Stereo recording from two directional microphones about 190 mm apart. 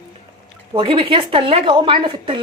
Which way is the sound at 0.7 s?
30° right (ahead or behind).